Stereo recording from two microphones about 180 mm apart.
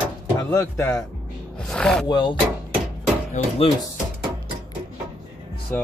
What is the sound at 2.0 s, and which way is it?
Speech, 25° left (ahead or behind).